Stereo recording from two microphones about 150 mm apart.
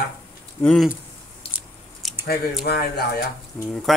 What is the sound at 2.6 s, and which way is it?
Speech, 90° left.